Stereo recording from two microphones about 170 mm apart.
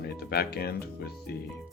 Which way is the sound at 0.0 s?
70° left (ahead or behind).